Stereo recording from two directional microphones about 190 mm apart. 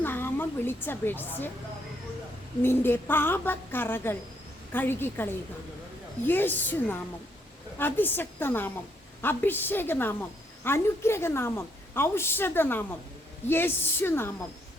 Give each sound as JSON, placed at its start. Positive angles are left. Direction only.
{"t": 0.0, "sound": "speech", "side_deg": 10}
{"t": 2.6, "sound": "a woman's voice", "side_deg": 10}